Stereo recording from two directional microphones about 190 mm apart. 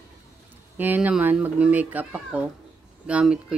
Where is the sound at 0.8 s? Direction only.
10° right (ahead or behind).